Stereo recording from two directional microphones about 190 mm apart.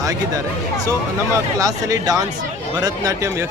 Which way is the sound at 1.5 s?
20° right (ahead or behind).